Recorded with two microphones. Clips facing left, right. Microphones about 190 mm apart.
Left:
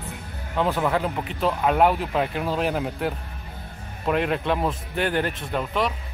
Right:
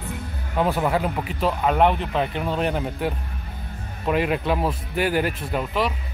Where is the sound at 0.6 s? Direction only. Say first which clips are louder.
Right 1 dB; 15° right (ahead or behind).